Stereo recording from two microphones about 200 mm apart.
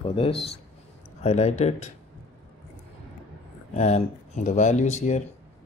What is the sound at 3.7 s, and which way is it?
Speech, 35° left (ahead or behind).